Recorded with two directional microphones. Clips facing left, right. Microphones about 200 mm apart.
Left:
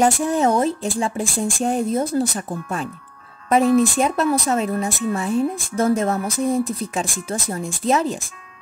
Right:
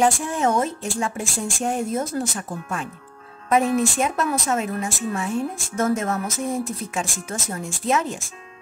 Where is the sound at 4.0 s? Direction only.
35° left (ahead or behind).